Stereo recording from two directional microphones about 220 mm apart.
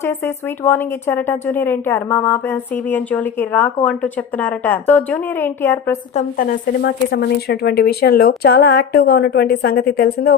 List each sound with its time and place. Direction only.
0.6 s speech: 10° left (ahead or behind)
6.1 s speech: 40° left (ahead or behind)